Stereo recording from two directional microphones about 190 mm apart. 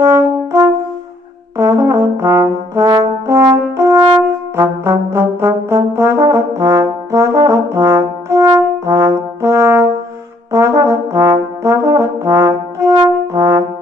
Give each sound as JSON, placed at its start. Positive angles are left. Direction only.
{"t": 0.0, "sound": "french horn", "side_deg": -15}
{"t": 1.6, "sound": "brass instrument", "side_deg": -15}